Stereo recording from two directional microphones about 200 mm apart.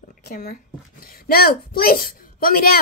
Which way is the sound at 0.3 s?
45° left (ahead or behind).